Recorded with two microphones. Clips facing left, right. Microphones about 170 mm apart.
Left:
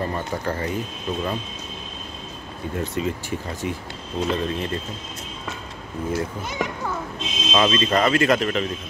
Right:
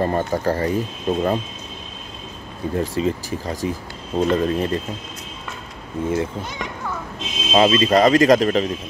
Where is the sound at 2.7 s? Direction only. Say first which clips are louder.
Right 4 dB; 35° right (ahead or behind).